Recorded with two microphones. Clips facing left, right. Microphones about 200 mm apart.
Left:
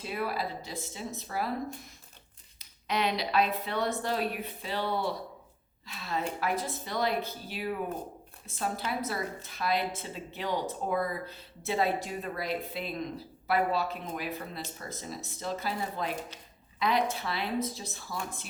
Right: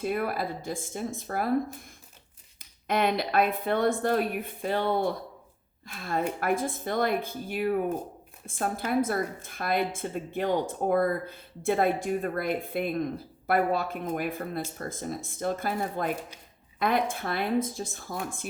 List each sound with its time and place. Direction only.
0.0 s a woman's voice: 50° right (ahead or behind)